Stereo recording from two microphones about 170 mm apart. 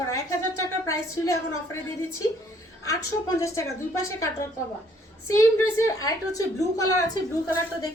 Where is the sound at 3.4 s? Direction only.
20° left (ahead or behind).